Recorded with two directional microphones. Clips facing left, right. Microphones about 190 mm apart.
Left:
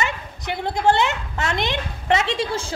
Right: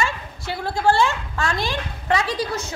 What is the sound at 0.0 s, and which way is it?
A woman's voice, 20° left (ahead or behind).